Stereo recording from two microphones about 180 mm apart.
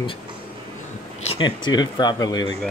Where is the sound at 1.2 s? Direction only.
25° left (ahead or behind).